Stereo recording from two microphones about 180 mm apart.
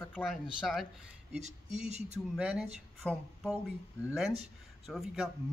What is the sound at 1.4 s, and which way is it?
Speech, 40° right (ahead or behind).